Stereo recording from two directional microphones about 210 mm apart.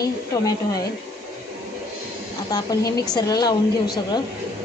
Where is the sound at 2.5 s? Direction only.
15° left (ahead or behind).